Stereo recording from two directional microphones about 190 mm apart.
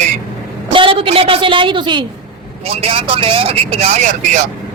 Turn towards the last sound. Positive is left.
turn(degrees=-40)  # may be behind; listen again after turning